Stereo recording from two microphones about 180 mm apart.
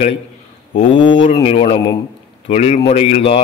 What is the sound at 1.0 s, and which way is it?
A man's voice, 30° left (ahead or behind).